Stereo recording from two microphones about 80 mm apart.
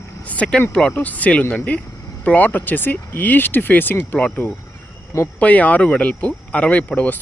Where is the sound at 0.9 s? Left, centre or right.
Left.